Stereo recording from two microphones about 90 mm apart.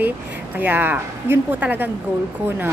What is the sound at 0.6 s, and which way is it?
Speech, 20° right (ahead or behind).